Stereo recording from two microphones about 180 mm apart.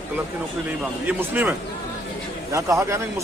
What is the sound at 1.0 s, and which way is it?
Speech, 10° right (ahead or behind).